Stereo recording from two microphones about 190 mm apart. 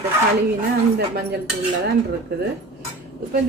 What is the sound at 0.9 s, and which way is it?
Speech, 60° right (ahead or behind).